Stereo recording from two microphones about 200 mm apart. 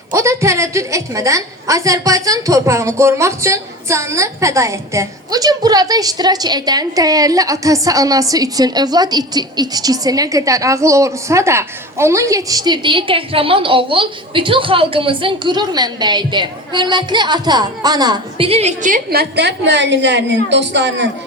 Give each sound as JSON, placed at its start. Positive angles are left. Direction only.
{"t": 0.1, "sound": "a woman's voice", "side_deg": -15}